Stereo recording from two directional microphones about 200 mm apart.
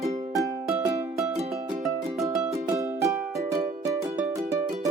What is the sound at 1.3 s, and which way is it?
Music, 35° right (ahead or behind).